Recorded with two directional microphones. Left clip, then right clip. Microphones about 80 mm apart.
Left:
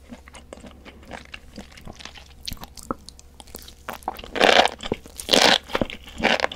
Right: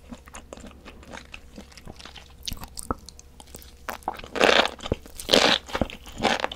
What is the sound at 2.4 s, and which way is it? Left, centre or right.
Chewing, centre.